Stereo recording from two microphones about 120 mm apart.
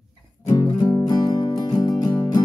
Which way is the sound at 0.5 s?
30° left (ahead or behind).